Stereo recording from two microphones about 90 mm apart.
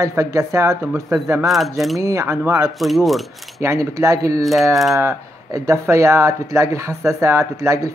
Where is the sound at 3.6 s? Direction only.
35° right (ahead or behind).